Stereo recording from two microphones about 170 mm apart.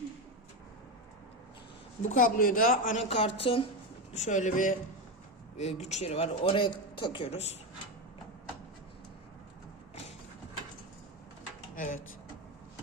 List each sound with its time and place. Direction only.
2.0 s speech: 55° left (ahead or behind)
3.1 s speech: 35° left (ahead or behind)
4.1 s speech: 45° left (ahead or behind)
11.7 s a sound: 50° left (ahead or behind)